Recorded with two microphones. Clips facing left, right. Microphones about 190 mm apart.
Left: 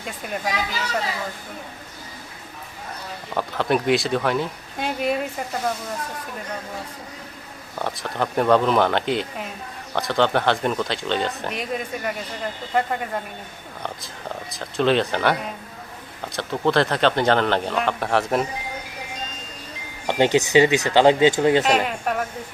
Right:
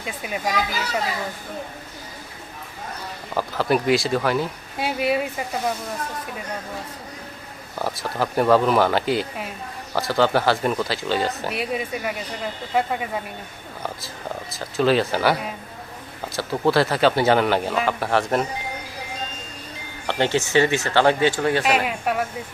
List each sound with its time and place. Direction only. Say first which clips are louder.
0.0 s speech: right 1 dB; 5° right (ahead or behind)
3.3 s speech: right 1 dB; centre (ahead or behind)
7.8 s speech: right 1 dB; 5° right (ahead or behind)
14.5 s speech: right 1 dB; 5° right (ahead or behind)
20.1 s speech: left 3 dB; 15° left (ahead or behind)
21.6 s speech: left 1 dB; 5° right (ahead or behind)